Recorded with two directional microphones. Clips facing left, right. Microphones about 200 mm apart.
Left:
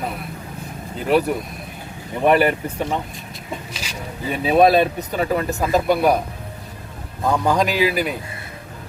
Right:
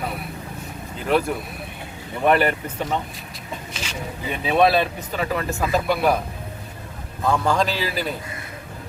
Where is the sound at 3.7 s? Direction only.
35° left (ahead or behind).